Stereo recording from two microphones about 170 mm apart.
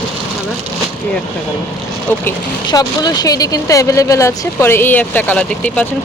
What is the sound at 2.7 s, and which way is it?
Speech, 25° left (ahead or behind).